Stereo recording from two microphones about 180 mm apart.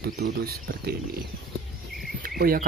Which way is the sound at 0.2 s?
60° right (ahead or behind).